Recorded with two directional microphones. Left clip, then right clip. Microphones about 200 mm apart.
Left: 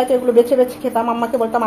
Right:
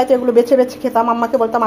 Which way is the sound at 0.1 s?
25° right (ahead or behind).